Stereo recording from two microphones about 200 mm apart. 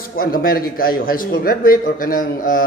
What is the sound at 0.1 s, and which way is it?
A man's voice, 45° left (ahead or behind).